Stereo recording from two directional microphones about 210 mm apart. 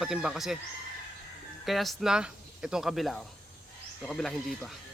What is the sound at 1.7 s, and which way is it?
Speech, centre (ahead or behind).